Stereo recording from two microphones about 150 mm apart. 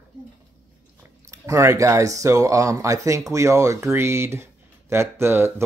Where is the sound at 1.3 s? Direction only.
20° right (ahead or behind).